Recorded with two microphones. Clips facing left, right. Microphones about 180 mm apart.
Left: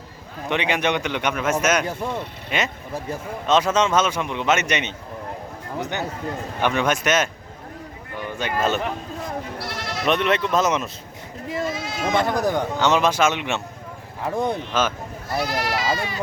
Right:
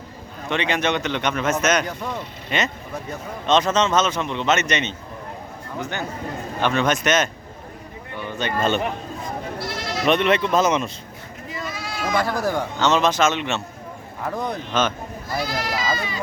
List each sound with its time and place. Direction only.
0.5 s a man's voice: 15° left (ahead or behind)
1.9 s speech: 25° left (ahead or behind)
2.5 s a man's voice: 5° left (ahead or behind)
6.6 s a man's voice: 10° left (ahead or behind)
8.4 s a man's voice: 10° left (ahead or behind)
9.6 s goat: 60° left (ahead or behind)
10.1 s speech: centre (ahead or behind)
11.6 s speech: 25° left (ahead or behind)
14.3 s speech: 25° left (ahead or behind)
14.7 s a man's voice: 5° left (ahead or behind)
15.4 s speech: 65° left (ahead or behind)